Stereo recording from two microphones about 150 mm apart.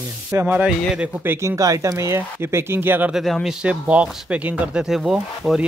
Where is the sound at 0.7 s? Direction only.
5° right (ahead or behind).